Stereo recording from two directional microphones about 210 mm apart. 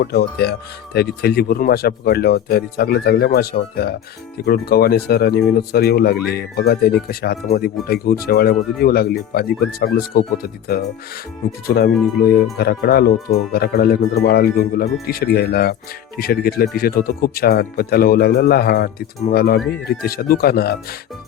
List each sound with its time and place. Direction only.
0.0 s speech: 50° left (ahead or behind)